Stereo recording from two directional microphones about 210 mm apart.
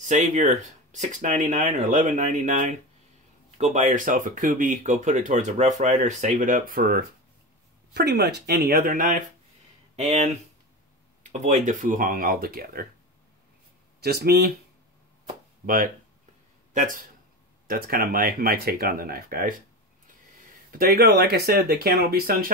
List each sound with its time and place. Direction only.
0.0 s speech: 35° right (ahead or behind)
14.0 s speech: 45° right (ahead or behind)
15.6 s speech: 40° right (ahead or behind)
20.7 s speech: 45° right (ahead or behind)